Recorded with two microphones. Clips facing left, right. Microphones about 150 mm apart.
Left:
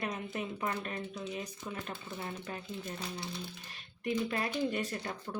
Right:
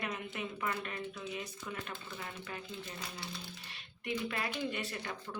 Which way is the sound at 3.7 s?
40° left (ahead or behind).